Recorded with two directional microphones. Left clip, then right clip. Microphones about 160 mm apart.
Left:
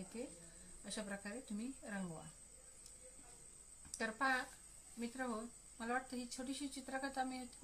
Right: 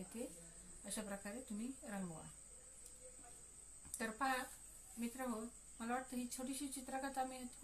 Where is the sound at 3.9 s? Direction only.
30° left (ahead or behind).